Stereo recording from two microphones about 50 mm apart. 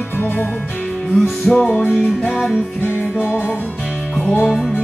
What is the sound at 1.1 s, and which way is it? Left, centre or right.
Music, centre.